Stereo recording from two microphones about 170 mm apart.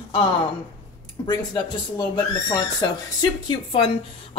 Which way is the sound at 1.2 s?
25° left (ahead or behind).